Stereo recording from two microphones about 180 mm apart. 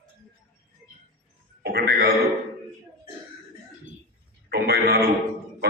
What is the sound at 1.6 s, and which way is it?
Throat clearing, 65° right (ahead or behind).